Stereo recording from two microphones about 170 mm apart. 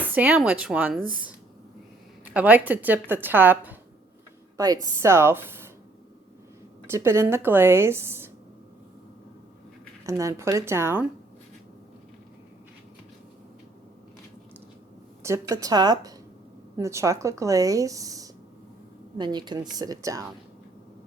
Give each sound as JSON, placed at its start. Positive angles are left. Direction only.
{"t": 0.0, "sound": "a woman's voice", "side_deg": -10}
{"t": 2.3, "sound": "a woman's voice", "side_deg": -10}
{"t": 4.5, "sound": "a woman's voice", "side_deg": -20}
{"t": 6.8, "sound": "a woman's voice", "side_deg": -15}
{"t": 10.1, "sound": "a woman's voice", "side_deg": -20}
{"t": 15.2, "sound": "speech", "side_deg": -20}